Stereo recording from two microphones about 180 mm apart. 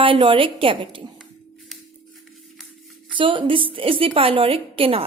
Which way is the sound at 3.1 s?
30° right (ahead or behind).